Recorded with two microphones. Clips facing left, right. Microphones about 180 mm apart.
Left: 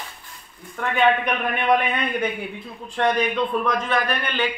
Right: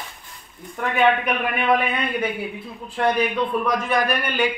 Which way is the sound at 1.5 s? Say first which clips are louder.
Left 1 dB; 5° right (ahead or behind).